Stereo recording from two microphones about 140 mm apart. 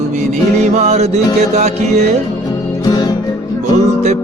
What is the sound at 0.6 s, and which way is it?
Music, 55° right (ahead or behind).